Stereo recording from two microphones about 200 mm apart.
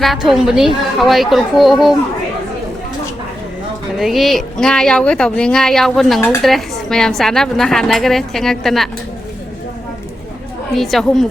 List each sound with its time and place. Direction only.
0.0 s a woman's voice: centre (ahead or behind)
3.9 s a woman's voice: centre (ahead or behind)
10.8 s a woman's voice: centre (ahead or behind)